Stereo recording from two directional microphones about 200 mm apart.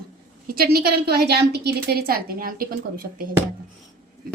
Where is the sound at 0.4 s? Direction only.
50° right (ahead or behind).